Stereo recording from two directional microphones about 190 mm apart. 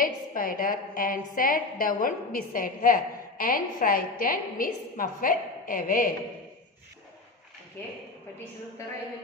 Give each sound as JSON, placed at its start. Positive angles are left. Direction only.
{"t": 0.0, "sound": "a woman's voice", "side_deg": 45}